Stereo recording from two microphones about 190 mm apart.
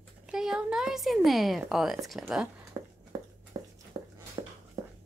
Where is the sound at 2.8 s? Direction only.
15° right (ahead or behind).